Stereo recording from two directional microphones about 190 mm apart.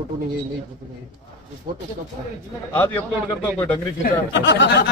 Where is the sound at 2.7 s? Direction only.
10° left (ahead or behind).